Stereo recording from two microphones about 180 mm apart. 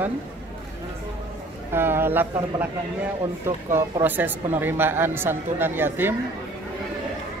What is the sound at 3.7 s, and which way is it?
Speech, 10° right (ahead or behind).